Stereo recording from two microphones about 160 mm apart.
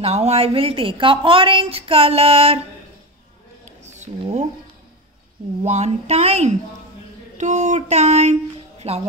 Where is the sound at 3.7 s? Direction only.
45° right (ahead or behind).